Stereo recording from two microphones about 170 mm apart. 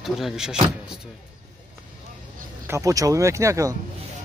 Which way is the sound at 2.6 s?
15° right (ahead or behind).